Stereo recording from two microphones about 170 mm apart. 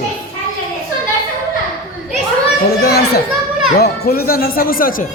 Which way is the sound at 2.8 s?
70° left (ahead or behind).